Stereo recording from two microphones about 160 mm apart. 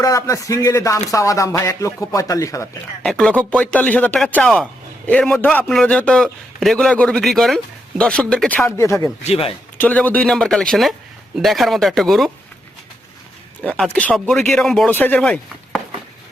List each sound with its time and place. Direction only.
0.0 s a man's voice: 20° left (ahead or behind)
3.0 s a man's voice: 5° left (ahead or behind)
9.2 s speech: 35° left (ahead or behind)
9.7 s a man's voice: 10° left (ahead or behind)
13.6 s a man's voice: 5° left (ahead or behind)